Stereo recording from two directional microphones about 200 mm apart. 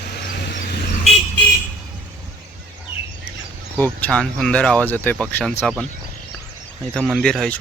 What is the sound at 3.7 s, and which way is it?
Speech, 10° left (ahead or behind).